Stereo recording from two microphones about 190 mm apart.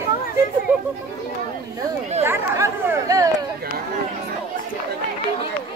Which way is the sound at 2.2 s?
15° right (ahead or behind).